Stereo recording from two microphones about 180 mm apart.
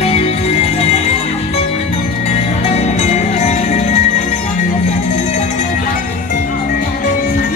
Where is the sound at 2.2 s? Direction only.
40° left (ahead or behind).